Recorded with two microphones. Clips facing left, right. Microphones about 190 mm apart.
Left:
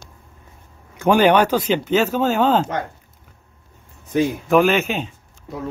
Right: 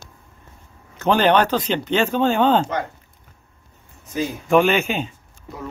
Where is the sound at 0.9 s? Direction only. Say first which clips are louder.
Left 2 dB; 10° left (ahead or behind).